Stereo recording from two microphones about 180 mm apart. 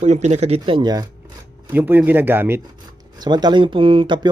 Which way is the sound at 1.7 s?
10° right (ahead or behind).